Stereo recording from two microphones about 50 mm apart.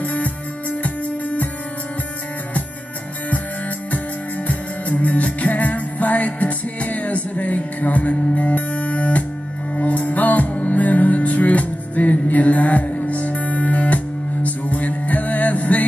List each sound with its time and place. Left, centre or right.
0.0 s music: left
4.5 s music: left